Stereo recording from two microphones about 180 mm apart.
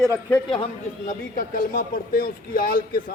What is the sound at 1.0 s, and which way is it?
Speech, 50° left (ahead or behind).